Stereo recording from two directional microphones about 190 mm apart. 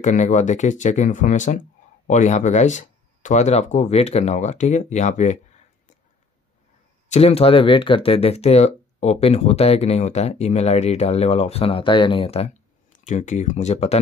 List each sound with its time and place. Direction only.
0.0 s speech: 40° left (ahead or behind)
7.1 s speech: 30° left (ahead or behind)